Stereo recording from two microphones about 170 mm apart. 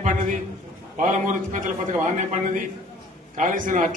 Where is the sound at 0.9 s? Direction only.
50° right (ahead or behind).